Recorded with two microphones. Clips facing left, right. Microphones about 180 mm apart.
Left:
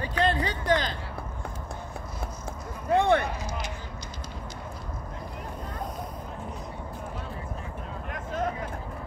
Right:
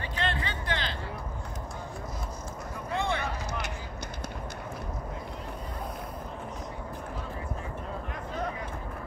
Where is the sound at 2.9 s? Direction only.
55° left (ahead or behind).